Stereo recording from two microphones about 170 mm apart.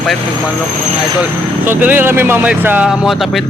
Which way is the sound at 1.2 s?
10° right (ahead or behind).